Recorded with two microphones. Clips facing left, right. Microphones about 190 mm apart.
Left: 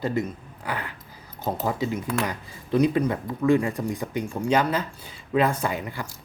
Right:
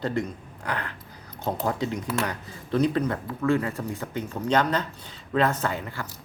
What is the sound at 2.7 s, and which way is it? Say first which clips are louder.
Speech: left 2 dB; 10° left (ahead or behind).